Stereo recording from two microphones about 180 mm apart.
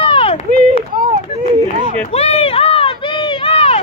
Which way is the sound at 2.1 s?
35° left (ahead or behind).